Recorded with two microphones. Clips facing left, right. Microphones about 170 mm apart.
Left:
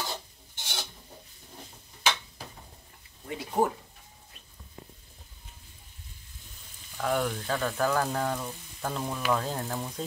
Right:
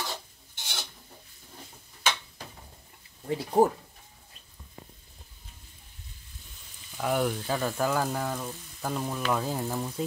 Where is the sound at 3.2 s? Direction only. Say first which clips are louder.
Right 5 dB; 35° right (ahead or behind).